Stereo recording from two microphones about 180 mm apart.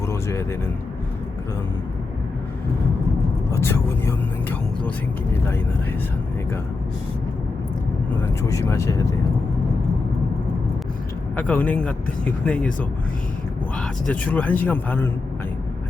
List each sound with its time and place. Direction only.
0.1 s a sound: 15° left (ahead or behind)
3.5 s vehicle: 15° left (ahead or behind)
8.2 s speech: 15° left (ahead or behind)
11.3 s speech: 10° left (ahead or behind)
13.7 s speech: 10° left (ahead or behind)